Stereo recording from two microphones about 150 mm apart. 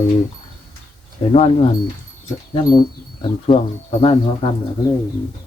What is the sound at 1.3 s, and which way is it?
Speech, 45° left (ahead or behind).